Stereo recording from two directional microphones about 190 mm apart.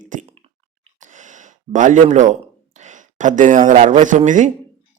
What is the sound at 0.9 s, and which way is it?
Gasp, 40° right (ahead or behind).